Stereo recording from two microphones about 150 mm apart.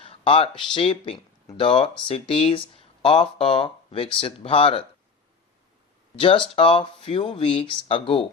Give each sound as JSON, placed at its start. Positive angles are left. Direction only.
{"t": 0.0, "sound": "speech", "side_deg": 40}
{"t": 6.1, "sound": "speech", "side_deg": 35}